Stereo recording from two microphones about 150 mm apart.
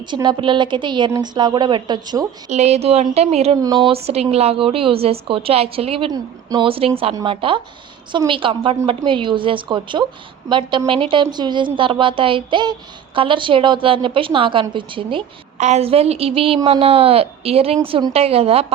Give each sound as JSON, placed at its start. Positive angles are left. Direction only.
{"t": 0.0, "sound": "speech", "side_deg": -30}
{"t": 2.5, "sound": "a woman's voice", "side_deg": -50}
{"t": 3.6, "sound": "speech", "side_deg": -30}
{"t": 6.1, "sound": "speech", "side_deg": -25}
{"t": 6.7, "sound": "speech", "side_deg": -40}
{"t": 15.5, "sound": "speech", "side_deg": -50}